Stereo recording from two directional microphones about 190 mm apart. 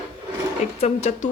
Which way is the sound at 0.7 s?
35° left (ahead or behind).